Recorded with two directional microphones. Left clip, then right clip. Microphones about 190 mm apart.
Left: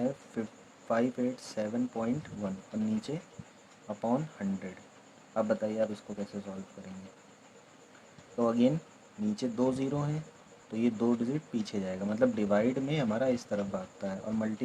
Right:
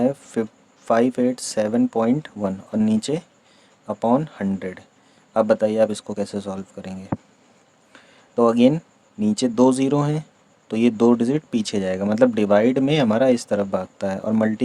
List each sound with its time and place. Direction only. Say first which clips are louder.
0.4 s speech: right 13 dB; 45° right (ahead or behind)
8.4 s speech: right 12 dB; 45° right (ahead or behind)